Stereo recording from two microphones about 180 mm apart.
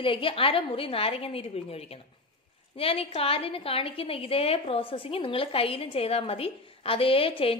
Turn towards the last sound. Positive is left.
turn(degrees=30)  # may be behind; listen again after turning